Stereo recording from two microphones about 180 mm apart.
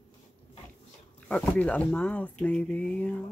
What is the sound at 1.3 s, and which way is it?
Speech, 5° left (ahead or behind).